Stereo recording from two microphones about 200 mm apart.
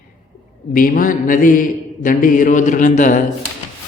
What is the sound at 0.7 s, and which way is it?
Mantra, 45° left (ahead or behind).